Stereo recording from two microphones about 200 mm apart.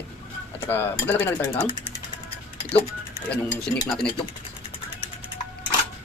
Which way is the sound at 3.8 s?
25° left (ahead or behind).